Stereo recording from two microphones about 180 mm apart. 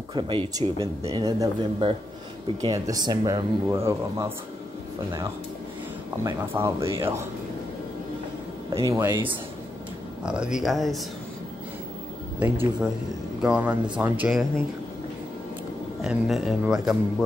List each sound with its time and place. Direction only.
0.1 s speech: 25° right (ahead or behind)
6.2 s speech: 15° right (ahead or behind)
8.7 s speech: 15° right (ahead or behind)
12.4 s speech: 10° right (ahead or behind)
16.0 s speech: centre (ahead or behind)